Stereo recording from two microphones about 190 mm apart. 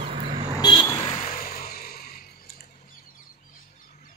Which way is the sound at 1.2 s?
45° left (ahead or behind).